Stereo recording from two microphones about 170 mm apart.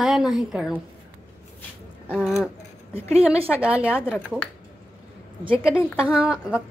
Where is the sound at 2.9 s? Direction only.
35° right (ahead or behind).